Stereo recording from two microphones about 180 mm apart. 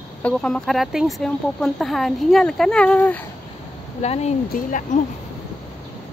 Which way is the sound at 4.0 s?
35° left (ahead or behind).